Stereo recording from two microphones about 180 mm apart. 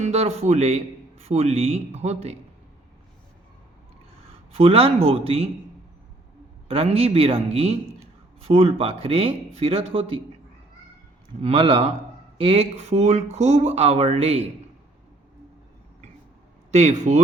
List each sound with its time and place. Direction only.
0.0 s speech: 35° right (ahead or behind)
4.3 s speech: 35° right (ahead or behind)
6.7 s speech: 30° right (ahead or behind)
11.3 s speech: 30° right (ahead or behind)
16.7 s speech: 40° right (ahead or behind)